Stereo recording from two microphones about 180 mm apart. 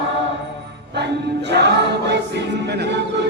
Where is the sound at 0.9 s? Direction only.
70° right (ahead or behind).